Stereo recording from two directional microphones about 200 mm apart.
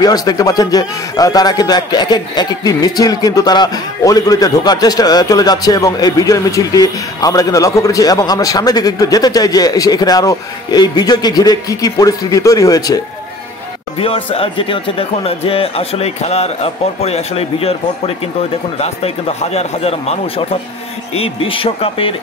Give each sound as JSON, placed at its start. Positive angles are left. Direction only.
{"t": 0.0, "sound": "a man's voice", "side_deg": 20}
{"t": 13.9, "sound": "a man's voice", "side_deg": 30}